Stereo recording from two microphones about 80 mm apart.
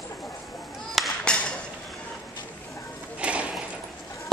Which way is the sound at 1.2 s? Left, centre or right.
Centre.